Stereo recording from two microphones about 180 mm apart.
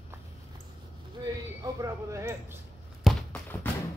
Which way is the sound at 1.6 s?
20° right (ahead or behind).